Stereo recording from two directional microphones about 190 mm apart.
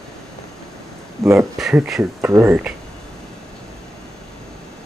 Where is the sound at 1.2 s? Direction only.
15° right (ahead or behind).